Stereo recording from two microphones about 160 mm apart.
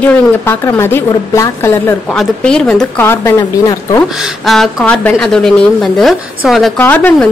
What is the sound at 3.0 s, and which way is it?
Speech, 15° left (ahead or behind).